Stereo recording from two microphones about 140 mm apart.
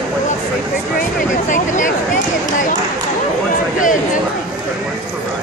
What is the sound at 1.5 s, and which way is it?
Speech, 65° left (ahead or behind).